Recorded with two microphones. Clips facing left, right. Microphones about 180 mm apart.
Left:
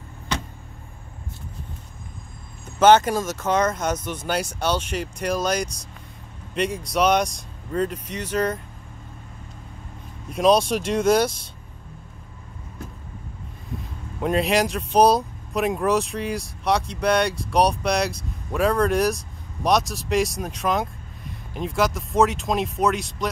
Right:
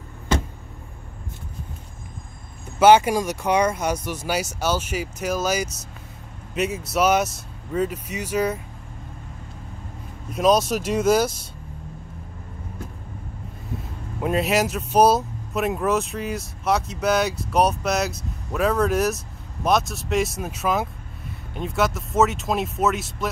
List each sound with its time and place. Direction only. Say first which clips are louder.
2.8 s speech: right 1 dB; 10° right (ahead or behind)
10.3 s speech: left 1 dB; 5° right (ahead or behind)
14.2 s speech: left 1 dB; 5° right (ahead or behind)